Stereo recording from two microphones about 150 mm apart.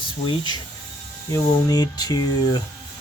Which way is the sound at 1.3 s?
25° left (ahead or behind).